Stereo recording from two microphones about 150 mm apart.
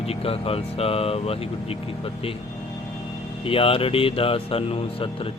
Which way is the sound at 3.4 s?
40° left (ahead or behind).